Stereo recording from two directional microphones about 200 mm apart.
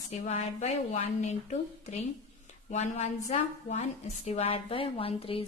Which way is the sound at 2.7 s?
35° left (ahead or behind).